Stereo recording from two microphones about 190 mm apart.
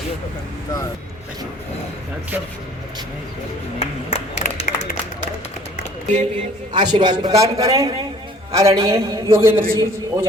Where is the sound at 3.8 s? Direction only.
35° left (ahead or behind).